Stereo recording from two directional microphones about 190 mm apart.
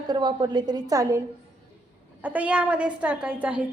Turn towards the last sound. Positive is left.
turn(degrees=-10)  # may be behind; listen again after turning